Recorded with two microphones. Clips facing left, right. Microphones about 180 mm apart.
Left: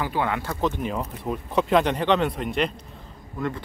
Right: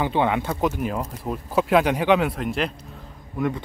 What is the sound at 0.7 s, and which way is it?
Speech, 5° right (ahead or behind).